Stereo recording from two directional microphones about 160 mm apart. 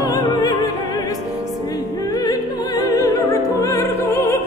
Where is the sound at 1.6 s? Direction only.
20° left (ahead or behind).